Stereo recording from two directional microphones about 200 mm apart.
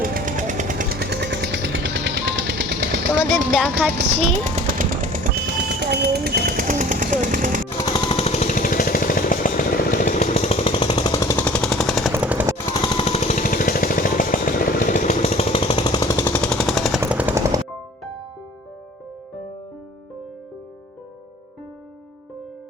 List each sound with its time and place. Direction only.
0.0 s vehicle: 45° right (ahead or behind); by 2.7 s 60° right (ahead or behind)
3.5 s speech: centre (ahead or behind)
4.1 s speech: 30° right (ahead or behind)
4.8 s a sound: 45° right (ahead or behind)
7.8 s jackhammer: 20° left (ahead or behind); by 12.1 s centre (ahead or behind)
12.1 s vehicle: 10° right (ahead or behind)
12.5 s jackhammer: 20° left (ahead or behind); by 17.0 s centre (ahead or behind)
17.0 s vehicle: 10° right (ahead or behind)